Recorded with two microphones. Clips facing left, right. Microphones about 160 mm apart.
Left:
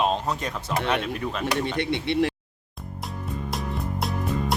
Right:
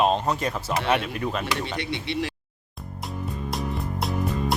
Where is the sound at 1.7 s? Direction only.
55° left (ahead or behind).